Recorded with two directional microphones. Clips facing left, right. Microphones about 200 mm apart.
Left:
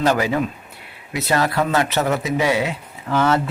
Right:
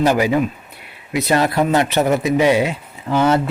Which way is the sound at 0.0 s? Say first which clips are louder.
Right 3 dB; 15° right (ahead or behind).